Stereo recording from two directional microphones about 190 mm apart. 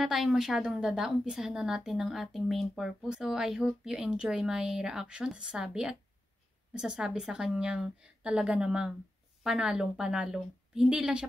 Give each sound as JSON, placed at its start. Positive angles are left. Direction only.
{"t": 0.0, "sound": "a woman's voice", "side_deg": 0}